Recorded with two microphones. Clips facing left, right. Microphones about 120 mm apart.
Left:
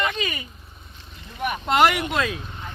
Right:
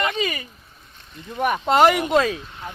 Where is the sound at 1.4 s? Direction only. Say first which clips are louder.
Right 3 dB; 35° right (ahead or behind).